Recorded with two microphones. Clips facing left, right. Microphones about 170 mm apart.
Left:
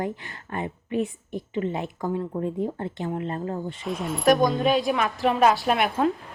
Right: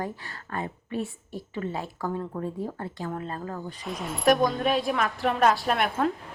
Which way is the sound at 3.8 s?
Centre (ahead or behind).